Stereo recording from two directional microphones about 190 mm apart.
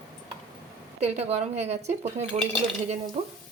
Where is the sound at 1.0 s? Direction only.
35° right (ahead or behind).